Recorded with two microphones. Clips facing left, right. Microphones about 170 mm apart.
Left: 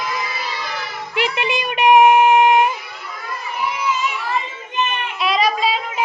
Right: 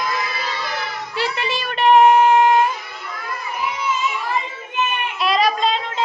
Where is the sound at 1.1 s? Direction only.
15° left (ahead or behind).